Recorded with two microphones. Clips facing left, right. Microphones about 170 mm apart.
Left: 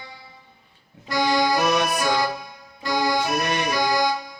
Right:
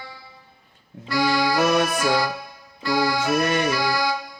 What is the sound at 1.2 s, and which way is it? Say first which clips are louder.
Accordion: left 1 dB; 20° left (ahead or behind).